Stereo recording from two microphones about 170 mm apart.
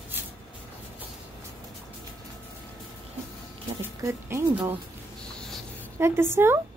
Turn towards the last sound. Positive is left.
turn(degrees=-15)  # may be behind; listen again after turning